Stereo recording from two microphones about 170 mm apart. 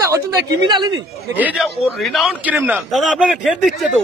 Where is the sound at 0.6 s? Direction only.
25° right (ahead or behind).